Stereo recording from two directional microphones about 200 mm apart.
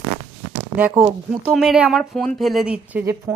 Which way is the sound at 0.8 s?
5° right (ahead or behind).